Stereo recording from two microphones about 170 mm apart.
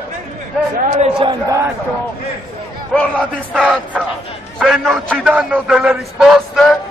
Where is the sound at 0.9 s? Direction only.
40° right (ahead or behind).